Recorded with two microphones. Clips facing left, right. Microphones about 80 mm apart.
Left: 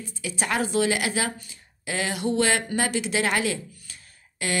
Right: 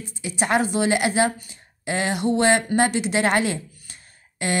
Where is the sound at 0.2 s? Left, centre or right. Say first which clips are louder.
Right 5 dB; right.